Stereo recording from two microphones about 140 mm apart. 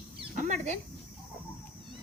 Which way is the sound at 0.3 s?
60° right (ahead or behind).